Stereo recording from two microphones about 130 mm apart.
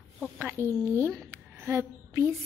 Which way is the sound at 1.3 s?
20° right (ahead or behind).